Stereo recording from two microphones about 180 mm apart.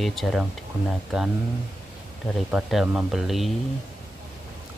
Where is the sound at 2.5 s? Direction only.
5° right (ahead or behind).